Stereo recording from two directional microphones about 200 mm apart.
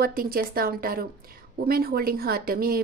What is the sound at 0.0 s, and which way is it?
Speech, 45° right (ahead or behind).